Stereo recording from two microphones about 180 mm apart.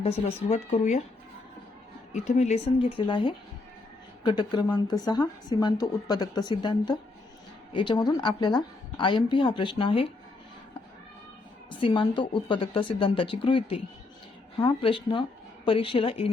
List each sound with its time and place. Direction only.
0.0 s speech: 35° left (ahead or behind)
2.1 s a woman's voice: 40° left (ahead or behind)
11.7 s a woman's voice: 30° left (ahead or behind)